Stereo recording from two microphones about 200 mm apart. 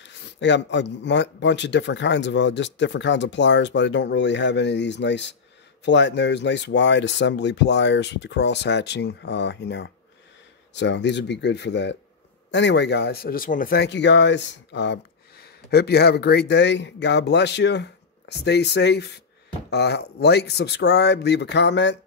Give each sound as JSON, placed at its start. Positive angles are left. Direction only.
{"t": 0.0, "sound": "speech", "side_deg": 60}